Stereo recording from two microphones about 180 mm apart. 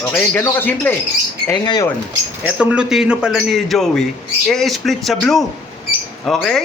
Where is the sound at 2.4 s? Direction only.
5° right (ahead or behind).